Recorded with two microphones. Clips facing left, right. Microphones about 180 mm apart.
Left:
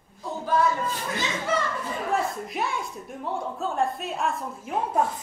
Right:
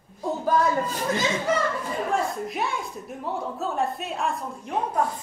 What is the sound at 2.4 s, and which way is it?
A woman's voice, centre (ahead or behind).